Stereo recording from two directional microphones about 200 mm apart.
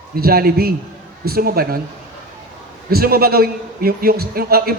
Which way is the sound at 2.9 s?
50° right (ahead or behind).